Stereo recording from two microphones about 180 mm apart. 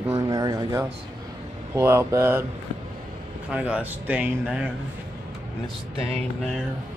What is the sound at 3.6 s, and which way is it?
Speech, 10° right (ahead or behind).